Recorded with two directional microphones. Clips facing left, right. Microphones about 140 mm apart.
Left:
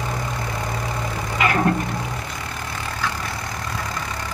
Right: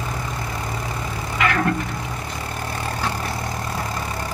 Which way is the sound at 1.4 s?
25° left (ahead or behind).